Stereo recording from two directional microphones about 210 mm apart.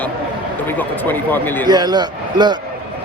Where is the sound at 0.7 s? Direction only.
10° left (ahead or behind).